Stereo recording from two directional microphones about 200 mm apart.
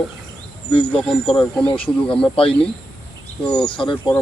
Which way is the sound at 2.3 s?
25° left (ahead or behind).